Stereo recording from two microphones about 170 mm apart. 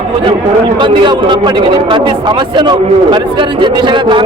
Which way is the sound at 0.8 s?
25° right (ahead or behind).